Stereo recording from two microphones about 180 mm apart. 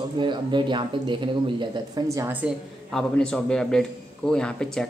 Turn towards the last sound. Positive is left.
turn(degrees=5)  # may be behind; listen again after turning